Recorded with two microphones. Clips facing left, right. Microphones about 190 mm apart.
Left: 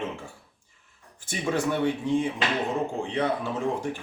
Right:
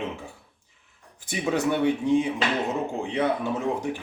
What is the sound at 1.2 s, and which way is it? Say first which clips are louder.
Speech: right 2 dB; 15° right (ahead or behind).